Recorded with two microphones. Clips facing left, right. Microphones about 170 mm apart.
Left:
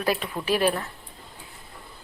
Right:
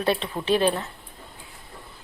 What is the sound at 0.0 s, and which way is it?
Speech, 30° right (ahead or behind).